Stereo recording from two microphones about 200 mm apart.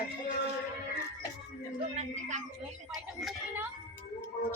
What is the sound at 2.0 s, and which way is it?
Speech, 35° right (ahead or behind).